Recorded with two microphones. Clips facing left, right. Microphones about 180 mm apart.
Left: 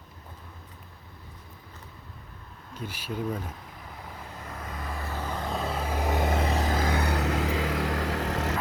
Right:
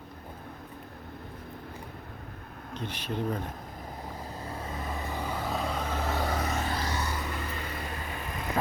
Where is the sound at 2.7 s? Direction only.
10° left (ahead or behind).